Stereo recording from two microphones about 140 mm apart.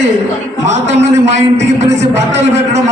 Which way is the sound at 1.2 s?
55° right (ahead or behind).